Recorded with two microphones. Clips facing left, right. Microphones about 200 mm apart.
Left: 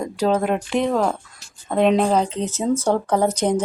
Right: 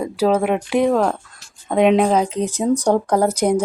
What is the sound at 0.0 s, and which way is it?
Speech, 5° right (ahead or behind).